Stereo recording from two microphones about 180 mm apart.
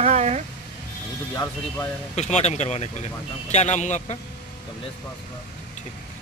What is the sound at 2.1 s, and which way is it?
Speech, 40° left (ahead or behind).